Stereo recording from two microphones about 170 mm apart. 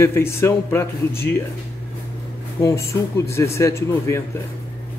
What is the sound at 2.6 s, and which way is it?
A man's voice, 15° left (ahead or behind).